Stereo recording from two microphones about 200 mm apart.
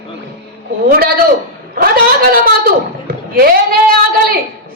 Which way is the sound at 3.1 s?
45° right (ahead or behind).